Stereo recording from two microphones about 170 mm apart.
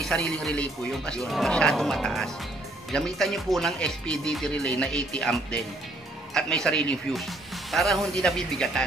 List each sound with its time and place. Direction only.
0.0 s speech: 5° left (ahead or behind)